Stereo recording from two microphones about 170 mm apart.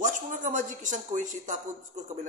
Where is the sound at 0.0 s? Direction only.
50° right (ahead or behind).